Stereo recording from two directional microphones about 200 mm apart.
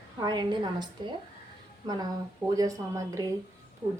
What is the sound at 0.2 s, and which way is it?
A woman's voice, 20° right (ahead or behind).